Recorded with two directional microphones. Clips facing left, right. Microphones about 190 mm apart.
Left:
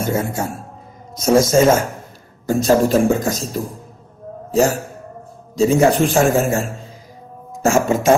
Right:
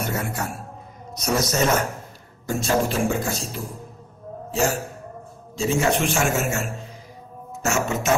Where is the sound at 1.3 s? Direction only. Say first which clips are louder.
Left 9 dB; 45° left (ahead or behind).